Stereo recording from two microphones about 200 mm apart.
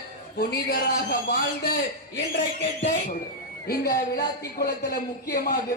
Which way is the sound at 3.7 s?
50° left (ahead or behind).